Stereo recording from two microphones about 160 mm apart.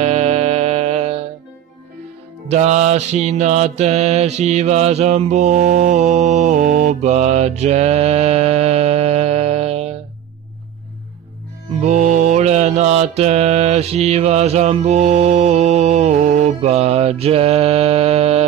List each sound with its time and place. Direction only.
0.0 s music: 40° right (ahead or behind)
2.5 s mantra: 45° right (ahead or behind)
11.8 s mantra: 50° right (ahead or behind)